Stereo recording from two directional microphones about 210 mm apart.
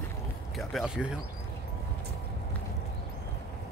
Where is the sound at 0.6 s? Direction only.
Centre (ahead or behind).